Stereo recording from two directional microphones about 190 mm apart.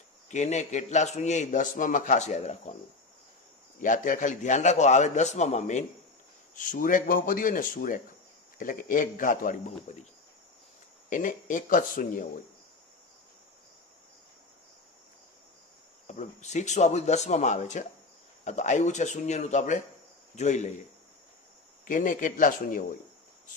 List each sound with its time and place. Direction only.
0.3 s a man's voice: 40° left (ahead or behind)
3.8 s a man's voice: 45° left (ahead or behind)
11.1 s speech: 45° left (ahead or behind)
16.1 s a man's voice: 40° left (ahead or behind)
21.8 s speech: 45° left (ahead or behind)